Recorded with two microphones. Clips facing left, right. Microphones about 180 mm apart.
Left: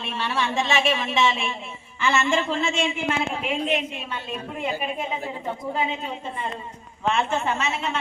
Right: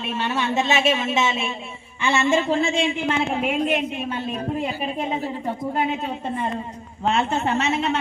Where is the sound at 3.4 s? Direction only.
50° right (ahead or behind).